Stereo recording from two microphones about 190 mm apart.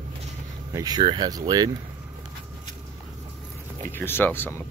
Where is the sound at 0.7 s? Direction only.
20° right (ahead or behind).